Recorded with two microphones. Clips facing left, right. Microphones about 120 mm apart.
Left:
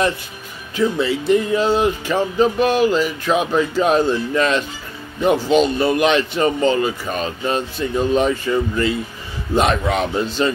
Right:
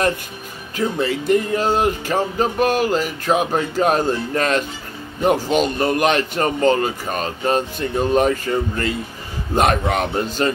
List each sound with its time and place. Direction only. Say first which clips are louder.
0.7 s speech: left 2 dB; 45° right (ahead or behind)